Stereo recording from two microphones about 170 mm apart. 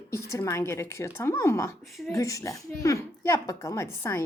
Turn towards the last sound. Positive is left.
turn(degrees=15)  # may be behind; listen again after turning